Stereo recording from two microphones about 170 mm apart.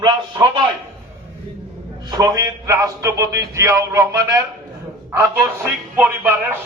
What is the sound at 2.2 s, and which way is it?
A man's voice, 15° right (ahead or behind).